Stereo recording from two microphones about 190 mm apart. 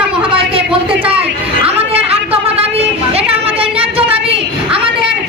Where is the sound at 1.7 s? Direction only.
30° right (ahead or behind).